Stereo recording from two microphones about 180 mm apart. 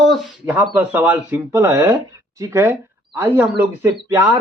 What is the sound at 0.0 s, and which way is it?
Speech, centre (ahead or behind).